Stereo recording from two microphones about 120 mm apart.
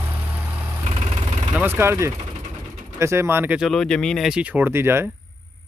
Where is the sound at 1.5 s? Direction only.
15° right (ahead or behind).